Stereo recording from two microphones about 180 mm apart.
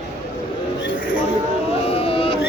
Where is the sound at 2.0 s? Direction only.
30° left (ahead or behind).